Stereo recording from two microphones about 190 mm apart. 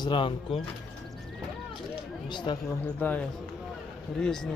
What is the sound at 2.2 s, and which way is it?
Speech, 25° left (ahead or behind).